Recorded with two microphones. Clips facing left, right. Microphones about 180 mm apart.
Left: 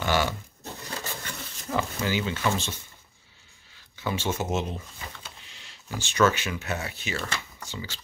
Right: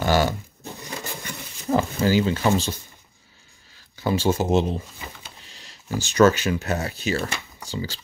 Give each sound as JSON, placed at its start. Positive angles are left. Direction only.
{"t": 0.0, "sound": "dog", "side_deg": -40}
{"t": 0.8, "sound": "a sound", "side_deg": -15}
{"t": 1.7, "sound": "speech", "side_deg": -40}
{"t": 3.9, "sound": "speech", "side_deg": -35}
{"t": 5.5, "sound": "a sound", "side_deg": -40}
{"t": 5.9, "sound": "speech", "side_deg": -40}